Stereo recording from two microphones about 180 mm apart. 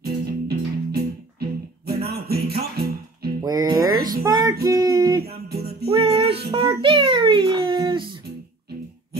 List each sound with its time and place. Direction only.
0.0 s music: 60° right (ahead or behind)
3.4 s music: 20° right (ahead or behind)
4.6 s a sound: 20° right (ahead or behind)
5.2 s music: 60° right (ahead or behind)
5.9 s music: 35° right (ahead or behind)
6.5 s a sound: 30° right (ahead or behind)